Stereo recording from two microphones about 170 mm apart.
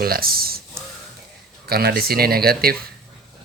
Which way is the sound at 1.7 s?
65° right (ahead or behind).